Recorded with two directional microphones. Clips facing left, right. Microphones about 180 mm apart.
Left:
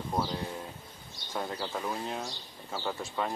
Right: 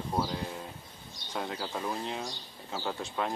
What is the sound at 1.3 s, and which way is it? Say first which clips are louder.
Speech: left 1 dB; 5° right (ahead or behind).